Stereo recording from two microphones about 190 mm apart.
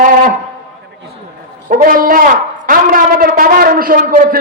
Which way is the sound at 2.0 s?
45° right (ahead or behind).